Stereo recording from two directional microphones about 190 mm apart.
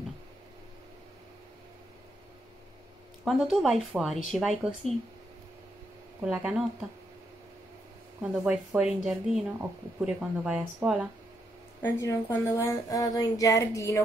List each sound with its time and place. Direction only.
3.3 s speech: centre (ahead or behind)
6.2 s speech: 5° right (ahead or behind)
8.2 s speech: 5° right (ahead or behind)
11.8 s a woman's voice: 10° left (ahead or behind)